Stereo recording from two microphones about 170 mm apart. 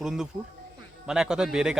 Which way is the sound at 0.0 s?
5° right (ahead or behind).